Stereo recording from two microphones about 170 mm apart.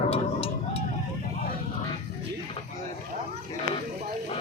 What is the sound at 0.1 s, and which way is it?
Music, 35° left (ahead or behind).